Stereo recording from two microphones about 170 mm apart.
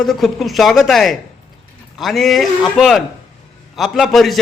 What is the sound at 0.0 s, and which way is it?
A man's voice, centre (ahead or behind).